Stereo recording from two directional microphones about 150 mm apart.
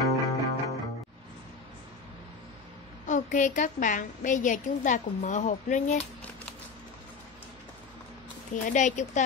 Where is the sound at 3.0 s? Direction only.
55° left (ahead or behind).